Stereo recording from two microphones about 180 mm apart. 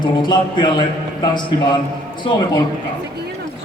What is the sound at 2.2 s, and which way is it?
Speech, 25° left (ahead or behind).